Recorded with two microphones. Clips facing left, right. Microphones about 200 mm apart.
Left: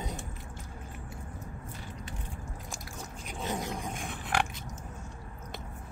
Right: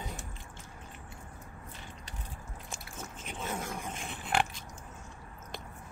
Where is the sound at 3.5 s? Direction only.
15° left (ahead or behind).